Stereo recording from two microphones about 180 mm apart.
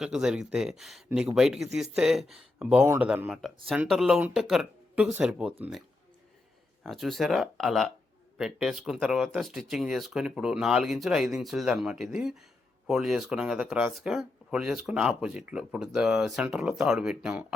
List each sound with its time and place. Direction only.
0.0 s speech: 5° right (ahead or behind)
2.8 s speech: 15° right (ahead or behind)
3.1 s speech: 5° right (ahead or behind)
6.8 s speech: centre (ahead or behind)